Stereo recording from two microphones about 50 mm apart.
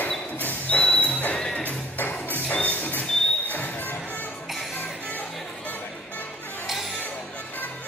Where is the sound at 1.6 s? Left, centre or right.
Left.